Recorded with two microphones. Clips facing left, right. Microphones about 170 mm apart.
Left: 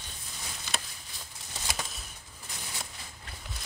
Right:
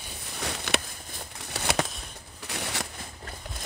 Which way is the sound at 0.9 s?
55° right (ahead or behind).